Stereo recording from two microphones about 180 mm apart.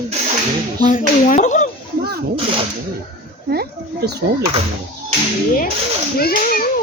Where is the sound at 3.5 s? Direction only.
60° right (ahead or behind).